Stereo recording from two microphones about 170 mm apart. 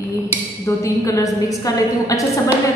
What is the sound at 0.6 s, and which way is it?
A woman's voice, 20° left (ahead or behind).